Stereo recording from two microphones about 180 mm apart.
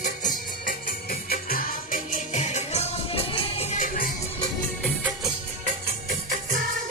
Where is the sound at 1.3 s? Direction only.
50° left (ahead or behind).